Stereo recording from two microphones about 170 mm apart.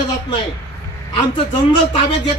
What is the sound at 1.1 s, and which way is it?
A man's voice, 25° left (ahead or behind).